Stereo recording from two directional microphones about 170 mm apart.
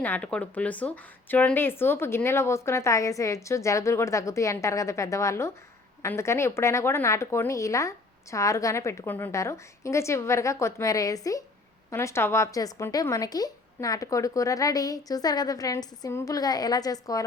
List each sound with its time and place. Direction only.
0.0 s a woman's voice: 10° left (ahead or behind)